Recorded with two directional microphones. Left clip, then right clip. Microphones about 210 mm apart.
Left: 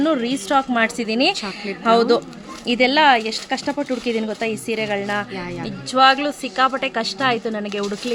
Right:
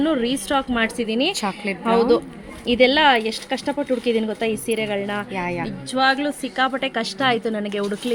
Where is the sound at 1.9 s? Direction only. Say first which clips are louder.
Left 2 dB; 10° left (ahead or behind).